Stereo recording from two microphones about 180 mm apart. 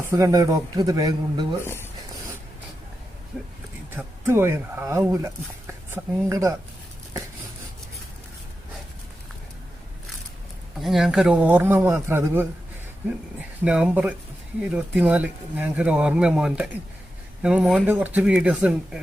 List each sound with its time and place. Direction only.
0.0 s speech: 15° right (ahead or behind)
1.6 s speech: 15° left (ahead or behind)
3.3 s speech: centre (ahead or behind)
3.9 s speech: 15° right (ahead or behind)
10.8 s speech: centre (ahead or behind)
13.7 s speech: 5° right (ahead or behind)